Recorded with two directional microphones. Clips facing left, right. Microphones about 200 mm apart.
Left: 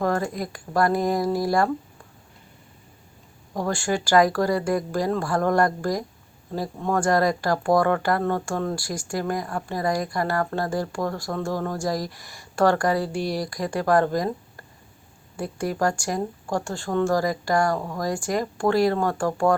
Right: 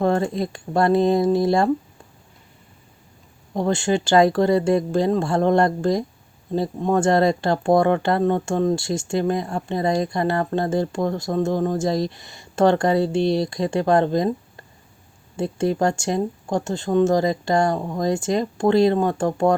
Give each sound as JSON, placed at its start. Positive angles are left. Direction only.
{"t": 0.0, "sound": "speech", "side_deg": -25}
{"t": 3.5, "sound": "speech", "side_deg": -25}